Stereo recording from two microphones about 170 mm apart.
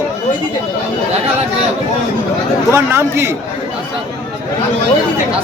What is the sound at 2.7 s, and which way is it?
Speech, 15° right (ahead or behind).